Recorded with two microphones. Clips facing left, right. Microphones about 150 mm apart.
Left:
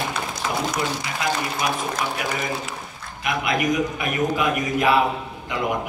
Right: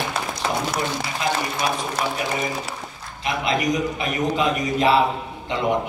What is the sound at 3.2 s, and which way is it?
A man's voice, 25° right (ahead or behind).